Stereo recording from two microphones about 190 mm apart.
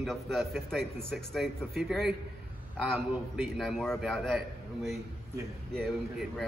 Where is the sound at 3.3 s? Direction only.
Centre (ahead or behind).